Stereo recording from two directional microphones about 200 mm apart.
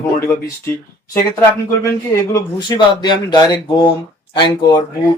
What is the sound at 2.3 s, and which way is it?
Speech, 20° left (ahead or behind).